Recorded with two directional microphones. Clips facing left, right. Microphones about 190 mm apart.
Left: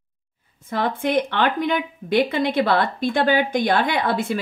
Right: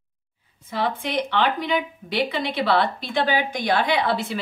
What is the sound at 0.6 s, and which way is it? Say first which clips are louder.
Speech: left 3 dB; 50° left (ahead or behind).